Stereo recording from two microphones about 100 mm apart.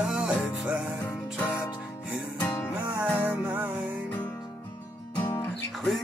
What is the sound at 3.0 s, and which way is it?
Music, 15° right (ahead or behind).